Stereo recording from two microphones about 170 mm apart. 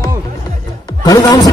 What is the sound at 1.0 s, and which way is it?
Music, 25° left (ahead or behind).